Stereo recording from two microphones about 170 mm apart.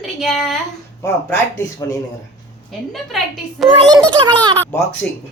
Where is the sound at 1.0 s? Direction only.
15° left (ahead or behind).